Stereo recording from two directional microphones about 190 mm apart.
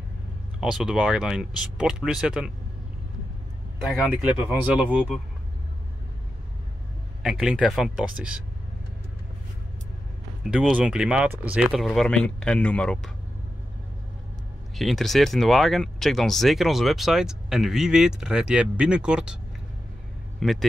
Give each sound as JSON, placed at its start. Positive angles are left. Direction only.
{"t": 0.6, "sound": "speech", "side_deg": -5}
{"t": 3.8, "sound": "speech", "side_deg": -5}
{"t": 7.2, "sound": "speech", "side_deg": -5}
{"t": 10.5, "sound": "speech", "side_deg": -5}
{"t": 14.8, "sound": "speech", "side_deg": 0}
{"t": 20.3, "sound": "speech", "side_deg": 0}